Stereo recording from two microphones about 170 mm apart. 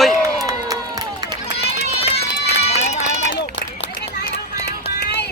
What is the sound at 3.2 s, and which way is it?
Run, 80° left.